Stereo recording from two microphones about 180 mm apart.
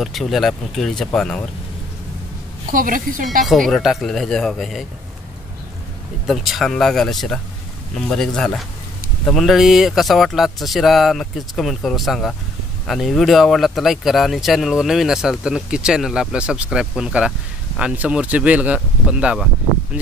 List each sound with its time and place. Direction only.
0.0 s speech: centre (ahead or behind)
2.7 s a woman's voice: 50° right (ahead or behind)
3.4 s speech: 5° left (ahead or behind)
6.2 s speech: centre (ahead or behind)